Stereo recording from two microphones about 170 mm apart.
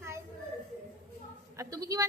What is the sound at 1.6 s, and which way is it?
Speech, 20° right (ahead or behind).